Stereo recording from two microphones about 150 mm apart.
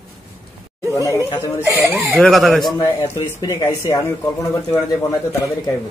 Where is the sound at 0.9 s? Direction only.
20° left (ahead or behind).